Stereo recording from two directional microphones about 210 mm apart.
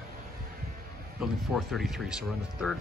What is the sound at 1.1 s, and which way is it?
Speech, centre (ahead or behind).